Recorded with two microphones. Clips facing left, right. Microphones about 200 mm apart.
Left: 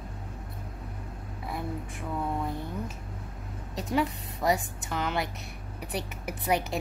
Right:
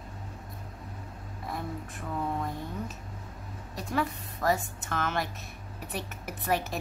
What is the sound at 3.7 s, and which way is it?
A woman's voice, 15° left (ahead or behind).